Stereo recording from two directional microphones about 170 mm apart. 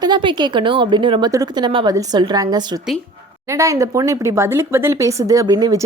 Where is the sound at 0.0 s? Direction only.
25° right (ahead or behind).